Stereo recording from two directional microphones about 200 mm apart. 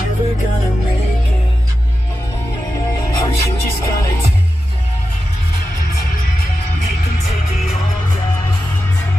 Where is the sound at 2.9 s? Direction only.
15° left (ahead or behind).